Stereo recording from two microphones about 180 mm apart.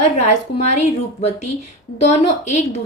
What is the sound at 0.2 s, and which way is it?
A woman's voice, 40° left (ahead or behind).